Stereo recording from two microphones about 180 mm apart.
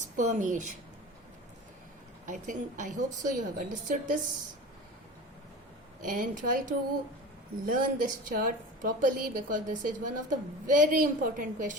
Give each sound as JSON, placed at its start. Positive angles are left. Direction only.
{"t": 0.2, "sound": "a woman's voice", "side_deg": -45}
{"t": 2.2, "sound": "a woman's voice", "side_deg": -45}
{"t": 6.1, "sound": "a woman's voice", "side_deg": -50}